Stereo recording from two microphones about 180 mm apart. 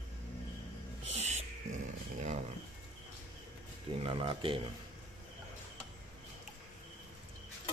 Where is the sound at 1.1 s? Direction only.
35° right (ahead or behind).